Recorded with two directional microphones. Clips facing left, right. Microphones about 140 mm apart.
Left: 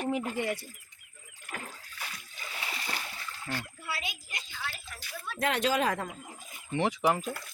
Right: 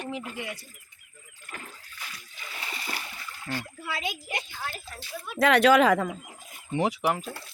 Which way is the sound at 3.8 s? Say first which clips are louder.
Right 5 dB; 80° right.